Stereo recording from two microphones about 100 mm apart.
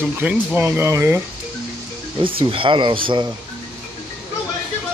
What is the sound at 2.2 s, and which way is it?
Speech, 60° right (ahead or behind).